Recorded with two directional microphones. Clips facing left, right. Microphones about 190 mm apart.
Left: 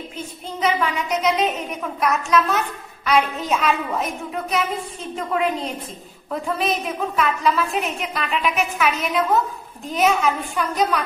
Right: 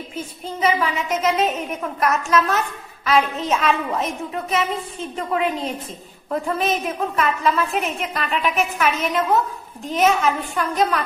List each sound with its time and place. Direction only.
0.6 s a woman's voice: 5° right (ahead or behind)